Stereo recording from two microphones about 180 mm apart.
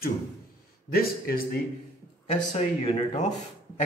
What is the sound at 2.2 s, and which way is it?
Speech, 35° left (ahead or behind).